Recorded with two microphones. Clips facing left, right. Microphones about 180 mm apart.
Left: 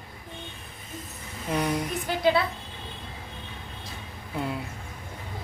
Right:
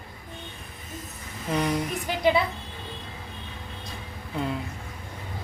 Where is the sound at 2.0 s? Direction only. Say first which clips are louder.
Even; 15° right (ahead or behind).